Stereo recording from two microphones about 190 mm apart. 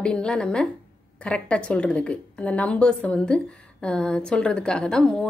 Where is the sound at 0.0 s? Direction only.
5° left (ahead or behind).